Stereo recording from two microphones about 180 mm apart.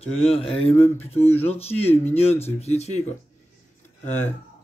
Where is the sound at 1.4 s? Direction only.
35° left (ahead or behind).